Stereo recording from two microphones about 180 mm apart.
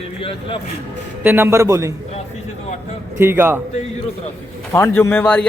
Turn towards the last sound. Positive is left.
turn(degrees=10)  # may be behind; listen again after turning